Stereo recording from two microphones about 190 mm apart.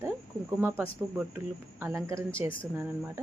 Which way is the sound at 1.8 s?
15° right (ahead or behind).